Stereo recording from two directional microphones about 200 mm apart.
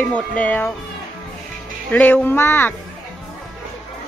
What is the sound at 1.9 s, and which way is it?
Speech, 10° left (ahead or behind).